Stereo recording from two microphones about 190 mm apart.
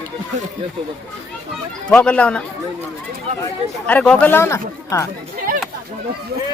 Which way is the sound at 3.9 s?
10° left (ahead or behind).